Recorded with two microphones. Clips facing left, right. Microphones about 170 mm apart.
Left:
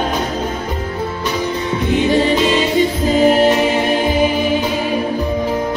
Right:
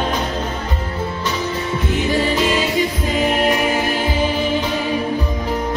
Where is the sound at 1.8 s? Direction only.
20° left (ahead or behind).